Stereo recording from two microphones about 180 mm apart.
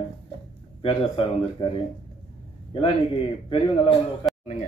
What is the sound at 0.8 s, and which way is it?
Speech, 30° left (ahead or behind).